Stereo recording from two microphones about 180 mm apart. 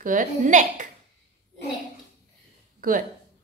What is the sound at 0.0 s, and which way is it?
Speech, 45° right (ahead or behind).